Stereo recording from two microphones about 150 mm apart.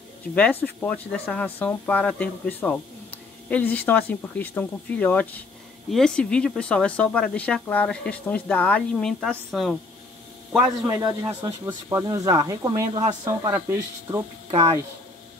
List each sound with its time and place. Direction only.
0.3 s speech: 10° left (ahead or behind)
10.9 s speech: 20° right (ahead or behind)
14.5 s speech: 45° right (ahead or behind)